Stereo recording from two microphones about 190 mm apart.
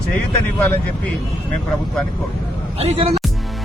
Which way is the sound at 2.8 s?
30° right (ahead or behind).